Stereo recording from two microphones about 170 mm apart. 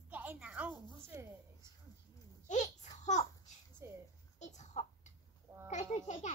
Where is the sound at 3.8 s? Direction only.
15° right (ahead or behind).